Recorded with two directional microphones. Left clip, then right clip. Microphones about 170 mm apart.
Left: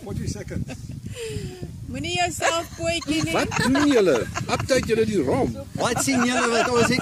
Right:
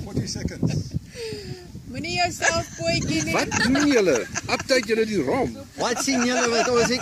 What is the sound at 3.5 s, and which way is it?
Speech, 50° left (ahead or behind).